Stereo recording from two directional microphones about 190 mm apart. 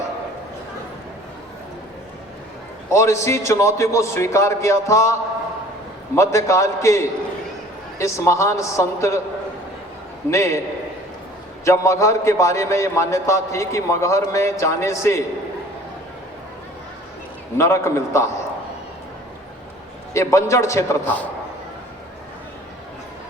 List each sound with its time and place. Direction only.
2.9 s a man's voice: 15° left (ahead or behind)
6.1 s a man's voice: 15° left (ahead or behind)
10.2 s a man's voice: 15° left (ahead or behind)
11.6 s a man's voice: 15° left (ahead or behind)
17.6 s a man's voice: 15° left (ahead or behind)
20.1 s a man's voice: 15° left (ahead or behind)